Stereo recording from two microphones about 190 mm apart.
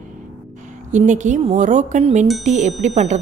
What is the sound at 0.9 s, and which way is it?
A woman's voice, 40° right (ahead or behind).